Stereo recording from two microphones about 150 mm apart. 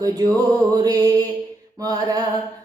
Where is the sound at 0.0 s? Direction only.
25° right (ahead or behind).